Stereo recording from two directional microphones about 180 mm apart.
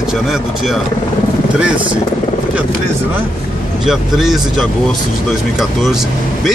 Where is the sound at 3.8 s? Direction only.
Centre (ahead or behind).